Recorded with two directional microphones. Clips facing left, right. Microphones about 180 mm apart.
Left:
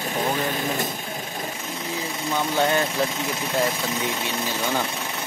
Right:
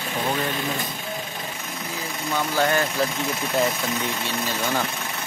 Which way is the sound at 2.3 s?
20° left (ahead or behind).